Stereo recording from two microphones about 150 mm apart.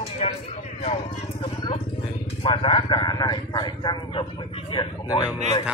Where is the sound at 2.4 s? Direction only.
35° left (ahead or behind).